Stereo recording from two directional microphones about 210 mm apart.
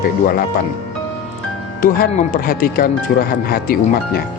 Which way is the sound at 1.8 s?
40° left (ahead or behind).